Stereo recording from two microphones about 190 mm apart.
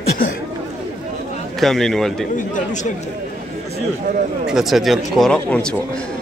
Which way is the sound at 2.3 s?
40° left (ahead or behind).